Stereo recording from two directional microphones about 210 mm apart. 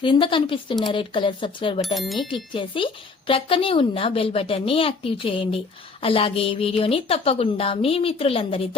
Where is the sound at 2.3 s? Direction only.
25° left (ahead or behind).